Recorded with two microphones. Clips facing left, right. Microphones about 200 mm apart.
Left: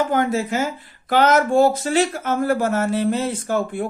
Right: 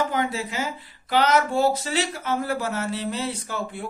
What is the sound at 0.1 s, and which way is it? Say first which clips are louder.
A man's voice: left 7 dB; 50° left (ahead or behind).